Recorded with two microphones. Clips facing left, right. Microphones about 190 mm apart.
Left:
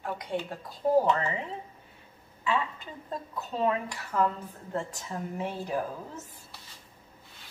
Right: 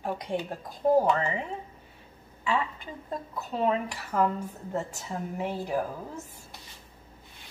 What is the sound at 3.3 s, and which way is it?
A woman's voice, 10° right (ahead or behind).